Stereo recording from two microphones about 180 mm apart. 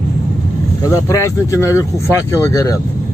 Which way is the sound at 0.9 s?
15° left (ahead or behind).